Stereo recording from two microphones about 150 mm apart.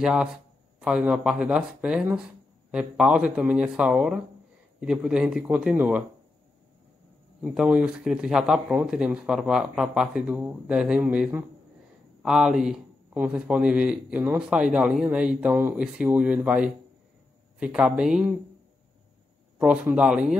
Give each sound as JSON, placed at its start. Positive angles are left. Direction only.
{"t": 0.0, "sound": "a man's voice", "side_deg": -5}
{"t": 7.4, "sound": "a man's voice", "side_deg": -10}
{"t": 19.6, "sound": "a man's voice", "side_deg": -10}